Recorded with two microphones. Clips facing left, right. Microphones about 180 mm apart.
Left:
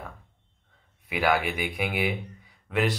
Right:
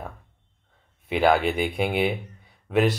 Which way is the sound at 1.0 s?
25° right (ahead or behind).